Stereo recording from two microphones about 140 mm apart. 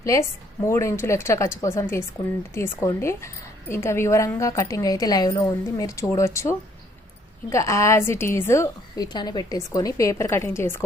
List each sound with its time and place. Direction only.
0.0 s a woman's voice: 25° left (ahead or behind)